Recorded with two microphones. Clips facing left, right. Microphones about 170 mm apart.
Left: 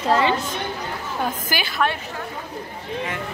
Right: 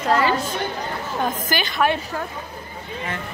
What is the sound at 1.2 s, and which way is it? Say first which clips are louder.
Speech: right 2 dB; 5° left (ahead or behind).